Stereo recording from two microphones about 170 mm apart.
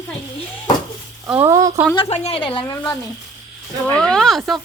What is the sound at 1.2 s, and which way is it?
Speech, 10° right (ahead or behind).